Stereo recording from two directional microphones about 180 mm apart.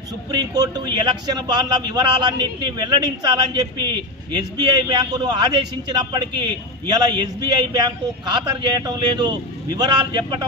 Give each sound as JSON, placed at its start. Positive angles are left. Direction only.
{"t": 0.3, "sound": "a man's voice", "side_deg": -20}